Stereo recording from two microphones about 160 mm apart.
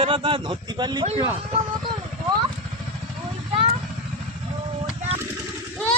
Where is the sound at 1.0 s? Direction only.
40° right (ahead or behind).